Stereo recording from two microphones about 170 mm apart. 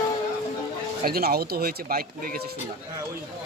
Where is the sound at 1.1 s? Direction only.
65° right (ahead or behind).